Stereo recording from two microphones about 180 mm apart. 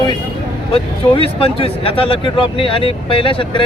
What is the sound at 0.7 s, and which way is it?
Speech, 30° left (ahead or behind).